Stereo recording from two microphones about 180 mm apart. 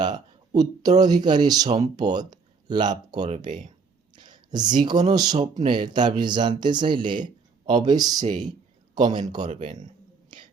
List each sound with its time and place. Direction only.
0.0 s speech: 25° right (ahead or behind)
4.1 s a sound: 25° right (ahead or behind)
5.1 s speech: 20° right (ahead or behind)
9.5 s speech: 45° right (ahead or behind)